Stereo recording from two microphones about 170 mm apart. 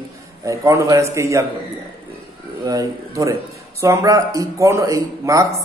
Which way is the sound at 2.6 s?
20° right (ahead or behind).